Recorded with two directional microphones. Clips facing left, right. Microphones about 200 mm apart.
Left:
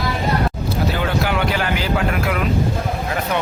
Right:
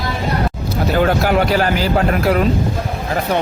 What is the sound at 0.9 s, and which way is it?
Speech, 45° right (ahead or behind).